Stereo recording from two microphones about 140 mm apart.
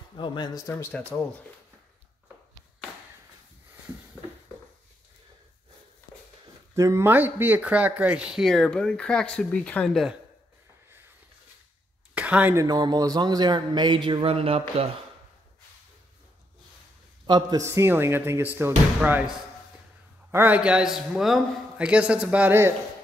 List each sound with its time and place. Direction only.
0.2 s a man's voice: 35° left (ahead or behind)
6.7 s speech: 20° right (ahead or behind); by 10.1 s centre (ahead or behind)
12.1 s a sound: 10° right (ahead or behind)
12.5 s a man's voice: 25° right (ahead or behind); by 14.6 s 45° right (ahead or behind)
17.3 s a man's voice: 30° right (ahead or behind)
17.6 s a man's voice: 15° right (ahead or behind)